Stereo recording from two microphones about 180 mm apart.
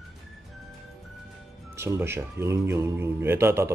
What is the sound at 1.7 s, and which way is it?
Speech, 15° right (ahead or behind).